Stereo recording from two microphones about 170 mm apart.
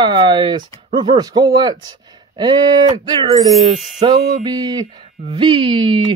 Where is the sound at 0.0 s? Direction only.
25° right (ahead or behind).